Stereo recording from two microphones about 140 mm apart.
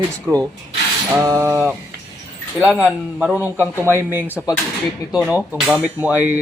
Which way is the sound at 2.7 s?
10° right (ahead or behind).